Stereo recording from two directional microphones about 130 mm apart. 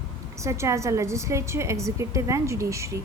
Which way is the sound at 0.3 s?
20° right (ahead or behind).